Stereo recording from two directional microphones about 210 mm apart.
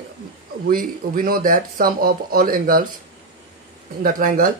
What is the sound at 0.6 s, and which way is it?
Speech, 40° right (ahead or behind).